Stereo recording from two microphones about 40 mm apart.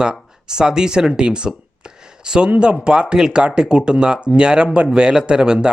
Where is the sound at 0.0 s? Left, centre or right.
Centre.